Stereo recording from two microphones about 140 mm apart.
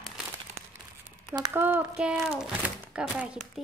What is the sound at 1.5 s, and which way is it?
Speech, 15° right (ahead or behind).